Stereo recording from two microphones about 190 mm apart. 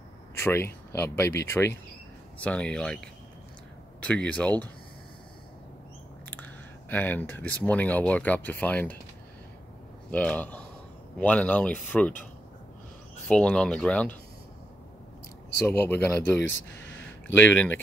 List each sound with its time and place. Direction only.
0.3 s speech: 10° left (ahead or behind)
4.0 s speech: 5° left (ahead or behind)
6.3 s speech: 10° left (ahead or behind)
10.1 s speech: 5° left (ahead or behind)
13.3 s speech: 5° left (ahead or behind)
15.6 s speech: 10° left (ahead or behind)
16.4 s speech: 75° left (ahead or behind)
17.0 s speech: 10° left (ahead or behind)